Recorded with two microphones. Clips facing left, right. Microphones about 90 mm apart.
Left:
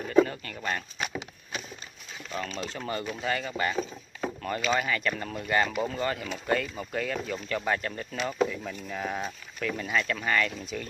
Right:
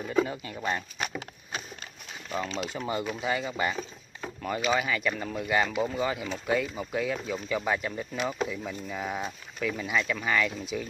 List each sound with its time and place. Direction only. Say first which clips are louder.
0.3 s speech: right 2 dB; 15° right (ahead or behind)
2.6 s speech: right 2 dB; 15° right (ahead or behind)